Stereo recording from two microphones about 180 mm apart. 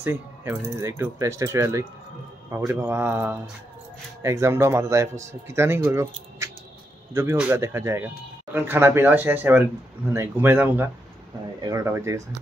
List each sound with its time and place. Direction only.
0.0 s speech: 10° right (ahead or behind)